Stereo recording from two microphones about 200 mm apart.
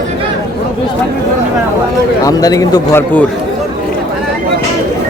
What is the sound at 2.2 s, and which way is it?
A man's voice, 15° left (ahead or behind).